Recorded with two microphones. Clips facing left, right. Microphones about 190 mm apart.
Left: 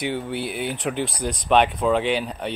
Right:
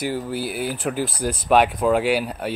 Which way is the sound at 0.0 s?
Centre (ahead or behind).